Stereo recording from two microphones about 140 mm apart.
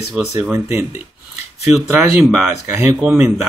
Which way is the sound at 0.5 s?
20° right (ahead or behind).